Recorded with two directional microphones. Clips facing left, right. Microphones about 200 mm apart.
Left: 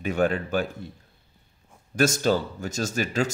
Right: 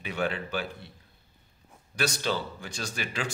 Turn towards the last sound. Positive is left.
turn(degrees=40)  # may be behind; listen again after turning